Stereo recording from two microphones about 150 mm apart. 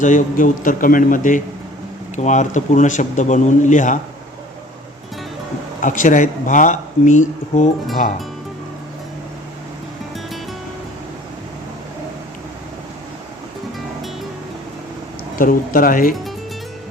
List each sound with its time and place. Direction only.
0.0 s speech: 60° left (ahead or behind)
5.8 s speech: 60° left (ahead or behind)
15.4 s speech: 70° left (ahead or behind)